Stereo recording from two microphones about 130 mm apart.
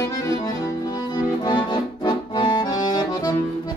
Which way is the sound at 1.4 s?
35° left (ahead or behind).